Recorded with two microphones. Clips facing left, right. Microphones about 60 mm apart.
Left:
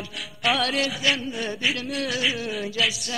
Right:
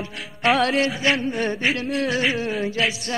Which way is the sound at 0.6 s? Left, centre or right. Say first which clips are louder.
Right 5 dB; right.